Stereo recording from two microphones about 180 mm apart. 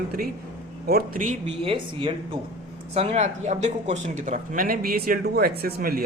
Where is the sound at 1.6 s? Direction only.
30° right (ahead or behind).